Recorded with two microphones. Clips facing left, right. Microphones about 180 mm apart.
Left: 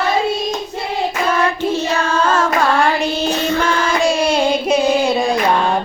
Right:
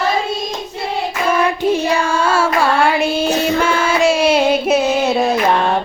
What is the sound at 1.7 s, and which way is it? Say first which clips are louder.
Child singing: right 2 dB; 15° right (ahead or behind).